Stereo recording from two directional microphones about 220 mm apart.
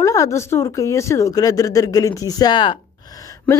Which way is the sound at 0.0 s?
15° left (ahead or behind).